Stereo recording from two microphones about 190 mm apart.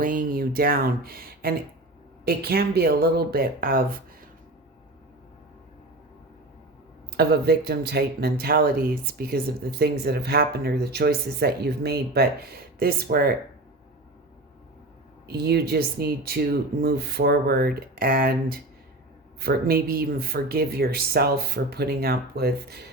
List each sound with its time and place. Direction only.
0.0 s speech: 45° right (ahead or behind)
7.2 s speech: 55° right (ahead or behind)
15.3 s speech: 55° right (ahead or behind)